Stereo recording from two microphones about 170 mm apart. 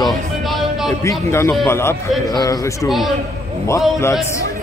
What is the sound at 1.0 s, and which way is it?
A man's voice, 15° left (ahead or behind).